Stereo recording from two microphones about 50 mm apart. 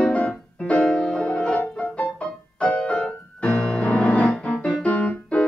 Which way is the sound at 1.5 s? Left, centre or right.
Left.